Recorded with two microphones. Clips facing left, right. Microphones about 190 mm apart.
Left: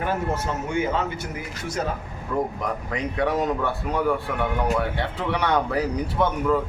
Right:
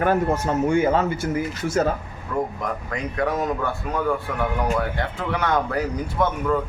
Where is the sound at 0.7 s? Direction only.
50° right (ahead or behind).